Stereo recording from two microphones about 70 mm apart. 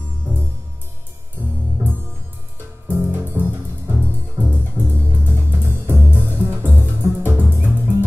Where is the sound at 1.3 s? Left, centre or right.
Right.